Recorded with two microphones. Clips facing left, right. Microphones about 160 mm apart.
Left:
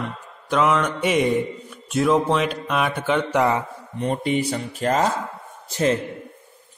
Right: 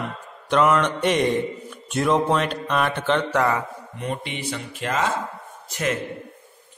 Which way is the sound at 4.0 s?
40° left (ahead or behind).